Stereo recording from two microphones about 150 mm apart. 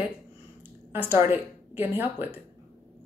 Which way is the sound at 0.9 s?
15° right (ahead or behind).